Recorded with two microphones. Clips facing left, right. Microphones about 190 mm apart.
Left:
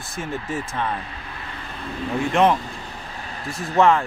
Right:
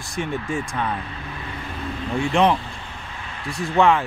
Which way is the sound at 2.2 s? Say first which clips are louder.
Even; centre (ahead or behind).